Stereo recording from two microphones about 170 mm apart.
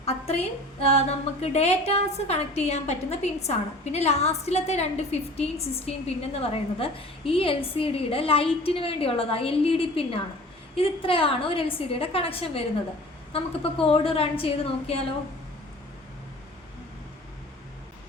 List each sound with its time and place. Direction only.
0.0 s a woman's voice: 35° left (ahead or behind)